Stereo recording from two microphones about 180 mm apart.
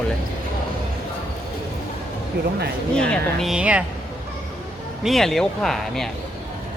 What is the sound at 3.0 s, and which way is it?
Speech, 5° left (ahead or behind).